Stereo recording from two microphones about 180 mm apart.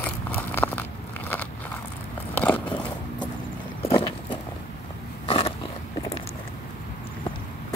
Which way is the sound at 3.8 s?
30° left (ahead or behind).